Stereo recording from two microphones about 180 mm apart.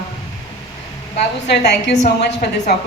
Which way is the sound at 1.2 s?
70° left (ahead or behind).